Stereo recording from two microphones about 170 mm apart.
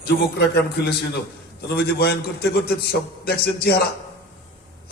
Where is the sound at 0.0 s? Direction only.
70° left (ahead or behind).